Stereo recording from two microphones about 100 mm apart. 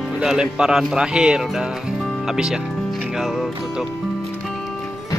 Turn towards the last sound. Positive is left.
turn(degrees=0)  # may be behind; listen again after turning